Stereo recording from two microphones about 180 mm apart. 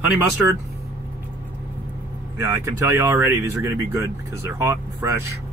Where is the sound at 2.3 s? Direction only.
15° right (ahead or behind).